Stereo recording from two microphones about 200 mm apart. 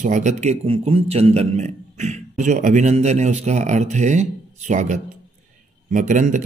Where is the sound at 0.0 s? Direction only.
35° right (ahead or behind).